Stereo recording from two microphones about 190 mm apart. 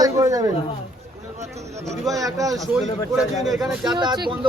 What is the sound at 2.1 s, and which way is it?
Speech, 15° right (ahead or behind).